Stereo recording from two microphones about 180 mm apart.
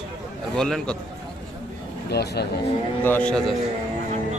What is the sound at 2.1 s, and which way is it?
Speech, 65° left (ahead or behind).